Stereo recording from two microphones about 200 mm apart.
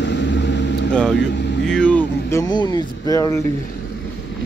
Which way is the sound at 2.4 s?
20° left (ahead or behind).